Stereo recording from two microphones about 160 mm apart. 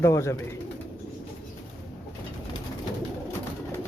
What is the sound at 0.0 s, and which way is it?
Speech, 20° left (ahead or behind).